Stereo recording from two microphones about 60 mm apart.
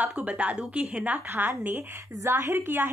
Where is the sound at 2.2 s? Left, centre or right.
Right.